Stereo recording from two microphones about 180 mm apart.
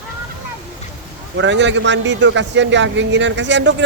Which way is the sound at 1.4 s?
85° right.